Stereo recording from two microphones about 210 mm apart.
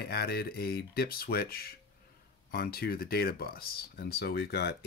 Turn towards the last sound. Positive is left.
turn(degrees=50)  # may be behind; listen again after turning